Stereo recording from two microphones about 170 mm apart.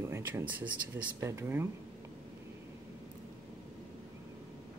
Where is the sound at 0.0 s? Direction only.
15° right (ahead or behind).